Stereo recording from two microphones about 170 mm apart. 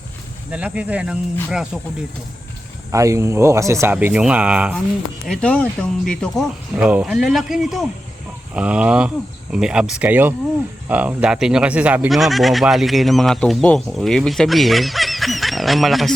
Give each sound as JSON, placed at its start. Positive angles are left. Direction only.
{"t": 0.5, "sound": "speech", "side_deg": -5}
{"t": 2.9, "sound": "speech", "side_deg": -20}
{"t": 5.3, "sound": "speech", "side_deg": 5}
{"t": 6.7, "sound": "speech", "side_deg": -5}